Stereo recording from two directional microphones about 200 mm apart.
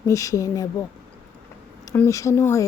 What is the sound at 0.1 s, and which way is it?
A woman's voice, 15° left (ahead or behind).